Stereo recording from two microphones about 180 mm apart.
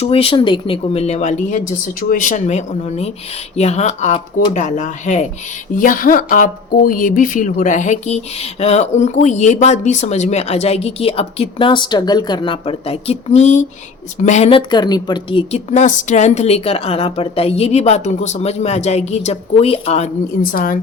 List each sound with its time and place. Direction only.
0.0 s speech: 30° left (ahead or behind)
20.5 s speech: 50° left (ahead or behind)